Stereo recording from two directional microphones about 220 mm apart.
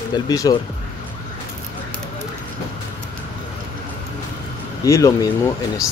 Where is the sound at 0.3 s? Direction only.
15° left (ahead or behind).